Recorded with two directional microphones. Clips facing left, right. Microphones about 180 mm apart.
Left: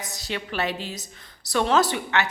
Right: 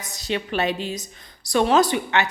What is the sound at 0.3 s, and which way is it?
A woman's voice, 20° right (ahead or behind).